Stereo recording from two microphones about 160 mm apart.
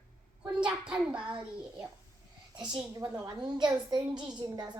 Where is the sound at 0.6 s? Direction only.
5° right (ahead or behind).